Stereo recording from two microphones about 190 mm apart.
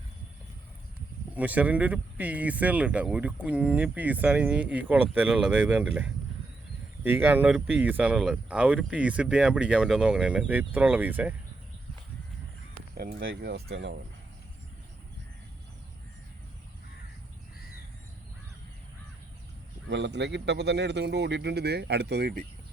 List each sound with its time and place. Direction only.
1.4 s speech: 10° right (ahead or behind)
13.0 s a man's voice: 50° right (ahead or behind)
19.9 s a man's voice: 65° right (ahead or behind)